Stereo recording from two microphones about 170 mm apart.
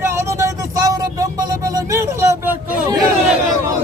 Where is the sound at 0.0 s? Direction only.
15° right (ahead or behind).